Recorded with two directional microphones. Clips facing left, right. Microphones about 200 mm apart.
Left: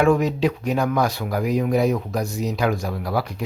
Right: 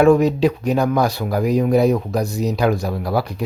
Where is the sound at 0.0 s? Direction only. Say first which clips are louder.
Right 5 dB; 35° right (ahead or behind).